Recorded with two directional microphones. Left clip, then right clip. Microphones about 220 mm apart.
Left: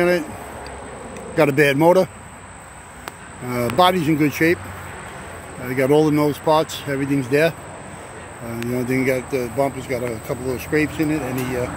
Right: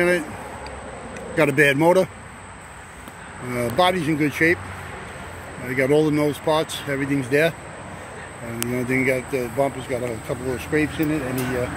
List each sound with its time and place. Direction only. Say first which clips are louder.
1.3 s speech: left 1 dB; 10° left (ahead or behind)
3.4 s speech: left 3 dB; 15° left (ahead or behind)
5.7 s speech: left 2 dB; 15° left (ahead or behind)
8.6 s speech: left 1 dB; 15° left (ahead or behind)